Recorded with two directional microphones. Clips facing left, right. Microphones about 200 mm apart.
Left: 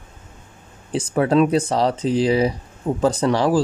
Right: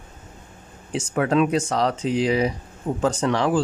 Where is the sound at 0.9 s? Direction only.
35° left (ahead or behind).